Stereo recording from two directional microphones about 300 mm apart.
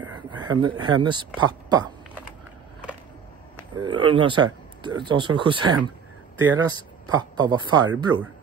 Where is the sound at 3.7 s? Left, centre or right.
Centre.